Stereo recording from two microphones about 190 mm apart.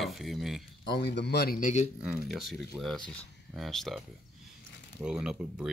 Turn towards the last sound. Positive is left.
turn(degrees=-5)  # may be behind; listen again after turning